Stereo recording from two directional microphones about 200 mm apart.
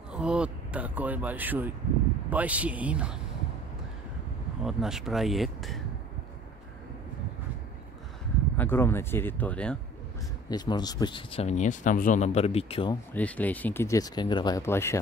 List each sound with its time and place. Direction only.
0.1 s a sound: 5° right (ahead or behind)
2.2 s speech: 5° right (ahead or behind)
4.6 s speech: centre (ahead or behind)
8.5 s speech: 10° left (ahead or behind)
10.5 s speech: 20° left (ahead or behind)
13.1 s speech: 10° left (ahead or behind)